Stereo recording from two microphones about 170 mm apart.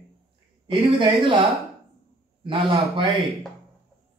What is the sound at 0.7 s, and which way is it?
Speech, 30° right (ahead or behind).